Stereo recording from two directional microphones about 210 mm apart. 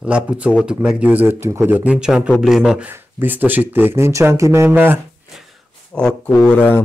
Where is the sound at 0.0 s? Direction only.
5° right (ahead or behind).